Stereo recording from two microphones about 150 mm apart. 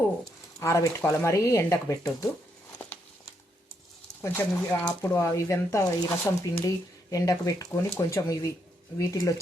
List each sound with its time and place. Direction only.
0.6 s speech: 20° left (ahead or behind)
4.2 s speech: 15° left (ahead or behind)